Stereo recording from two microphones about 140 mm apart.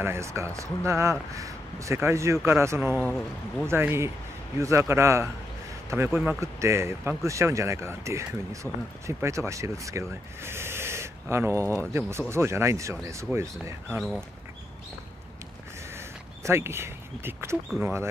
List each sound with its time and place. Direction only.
0.0 s speech: 20° right (ahead or behind)
8.6 s speech: centre (ahead or behind)
9.0 s speech: 20° right (ahead or behind)
15.9 s a sound: 20° right (ahead or behind)
17.7 s speech: 15° right (ahead or behind)